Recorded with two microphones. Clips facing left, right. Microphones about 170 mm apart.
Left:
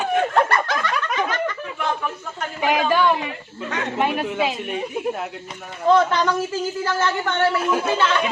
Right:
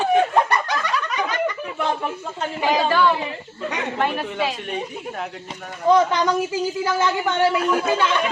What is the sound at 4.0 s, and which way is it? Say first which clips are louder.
Speech: left 3 dB; 5° left (ahead or behind).